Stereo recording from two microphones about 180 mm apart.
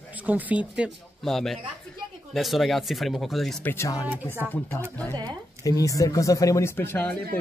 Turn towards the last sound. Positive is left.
turn(degrees=10)  # may be behind; listen again after turning